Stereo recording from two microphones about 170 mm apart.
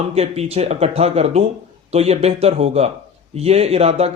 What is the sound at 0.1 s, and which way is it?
Speech, 35° right (ahead or behind).